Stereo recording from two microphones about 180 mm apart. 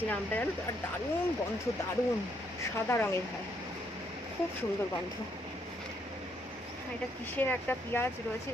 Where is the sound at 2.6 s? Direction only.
15° left (ahead or behind).